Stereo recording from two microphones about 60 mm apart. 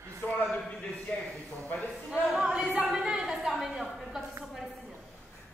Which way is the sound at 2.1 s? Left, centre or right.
Centre.